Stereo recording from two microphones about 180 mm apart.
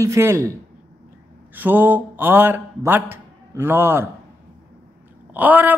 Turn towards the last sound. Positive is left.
turn(degrees=-10)  # may be behind; listen again after turning